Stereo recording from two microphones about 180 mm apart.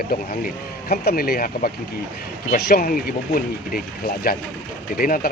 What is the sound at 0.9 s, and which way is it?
Speech, 55° left (ahead or behind).